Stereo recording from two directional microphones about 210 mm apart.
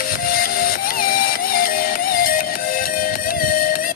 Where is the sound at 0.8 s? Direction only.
45° left (ahead or behind).